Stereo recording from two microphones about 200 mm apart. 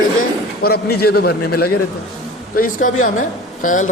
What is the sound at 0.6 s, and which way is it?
A man's voice, 50° left (ahead or behind).